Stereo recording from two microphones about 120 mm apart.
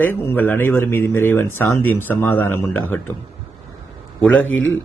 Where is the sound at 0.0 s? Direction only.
15° left (ahead or behind).